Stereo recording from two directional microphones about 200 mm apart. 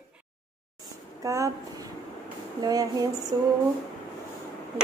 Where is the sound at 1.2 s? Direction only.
15° right (ahead or behind).